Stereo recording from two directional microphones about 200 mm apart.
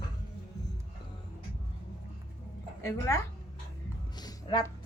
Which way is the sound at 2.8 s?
15° left (ahead or behind).